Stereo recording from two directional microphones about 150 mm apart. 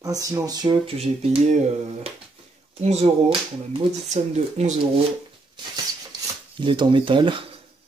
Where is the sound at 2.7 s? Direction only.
45° right (ahead or behind).